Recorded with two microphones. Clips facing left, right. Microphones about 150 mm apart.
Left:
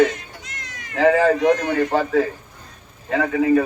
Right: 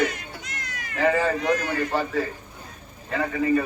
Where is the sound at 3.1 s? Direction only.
65° left (ahead or behind).